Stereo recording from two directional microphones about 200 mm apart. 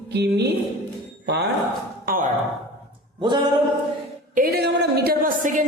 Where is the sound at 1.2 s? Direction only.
55° right (ahead or behind).